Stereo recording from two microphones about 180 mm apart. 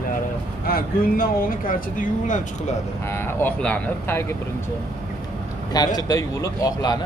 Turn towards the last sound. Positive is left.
turn(degrees=20)  # may be behind; listen again after turning